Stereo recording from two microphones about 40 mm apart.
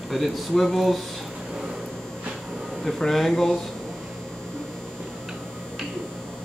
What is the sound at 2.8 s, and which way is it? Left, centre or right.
Speech, centre.